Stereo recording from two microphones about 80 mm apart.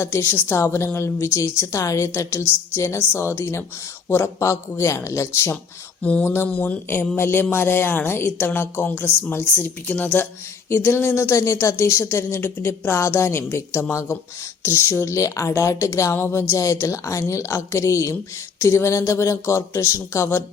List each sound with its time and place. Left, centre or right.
0.0 s speech: left
6.0 s a sound: centre
6.2 s speech: left
7.2 s speech: left